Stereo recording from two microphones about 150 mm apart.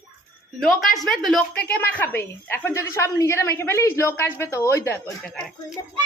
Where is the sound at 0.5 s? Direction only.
Centre (ahead or behind); by 5.0 s 20° left (ahead or behind).